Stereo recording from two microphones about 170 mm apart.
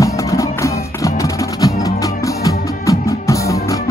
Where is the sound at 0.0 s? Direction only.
20° left (ahead or behind).